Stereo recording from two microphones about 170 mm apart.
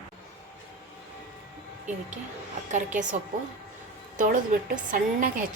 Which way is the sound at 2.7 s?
45° right (ahead or behind).